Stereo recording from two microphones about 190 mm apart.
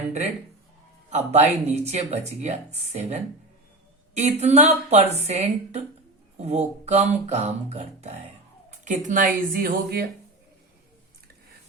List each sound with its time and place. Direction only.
1.1 s speech: 35° right (ahead or behind); by 10.1 s 55° right (ahead or behind)